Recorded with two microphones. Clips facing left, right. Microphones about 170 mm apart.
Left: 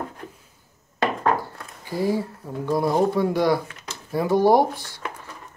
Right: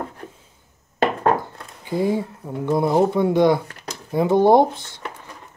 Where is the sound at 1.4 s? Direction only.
20° right (ahead or behind).